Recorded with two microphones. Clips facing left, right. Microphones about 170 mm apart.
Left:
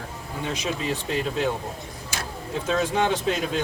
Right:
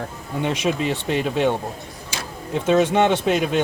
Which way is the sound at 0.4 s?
70° right (ahead or behind).